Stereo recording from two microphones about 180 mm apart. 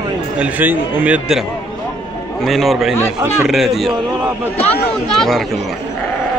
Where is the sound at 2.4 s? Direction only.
Centre (ahead or behind).